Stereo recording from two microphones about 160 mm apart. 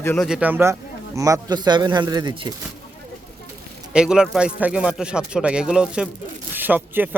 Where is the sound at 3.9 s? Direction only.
5° right (ahead or behind).